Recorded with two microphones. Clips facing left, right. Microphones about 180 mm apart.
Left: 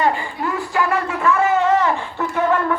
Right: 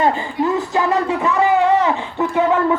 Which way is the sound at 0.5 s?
20° right (ahead or behind).